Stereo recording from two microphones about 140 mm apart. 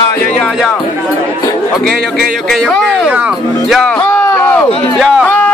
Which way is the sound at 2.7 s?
10° left (ahead or behind).